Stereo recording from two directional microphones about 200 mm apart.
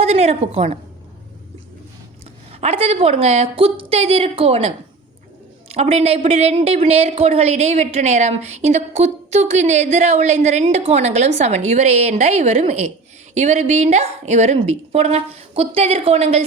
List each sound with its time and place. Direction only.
0.0 s a woman's voice: 30° right (ahead or behind)
2.5 s speech: 30° right (ahead or behind)